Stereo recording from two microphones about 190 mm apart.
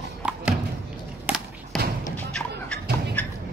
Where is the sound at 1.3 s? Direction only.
10° right (ahead or behind).